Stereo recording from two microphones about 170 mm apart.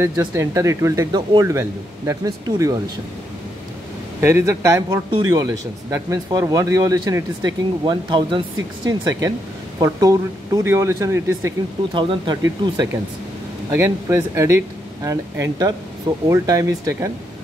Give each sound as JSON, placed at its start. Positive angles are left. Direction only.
{"t": 0.2, "sound": "speech", "side_deg": -15}
{"t": 4.2, "sound": "speech", "side_deg": -15}
{"t": 7.8, "sound": "speech", "side_deg": -30}
{"t": 11.9, "sound": "speech", "side_deg": -30}
{"t": 13.7, "sound": "speech", "side_deg": -15}